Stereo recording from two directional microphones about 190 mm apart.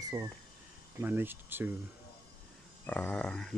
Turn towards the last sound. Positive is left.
turn(degrees=5)  # may be behind; listen again after turning